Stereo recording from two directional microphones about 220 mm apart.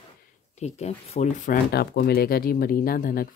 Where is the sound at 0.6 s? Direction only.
30° left (ahead or behind).